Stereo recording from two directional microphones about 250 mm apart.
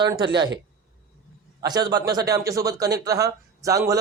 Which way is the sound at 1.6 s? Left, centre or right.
Centre.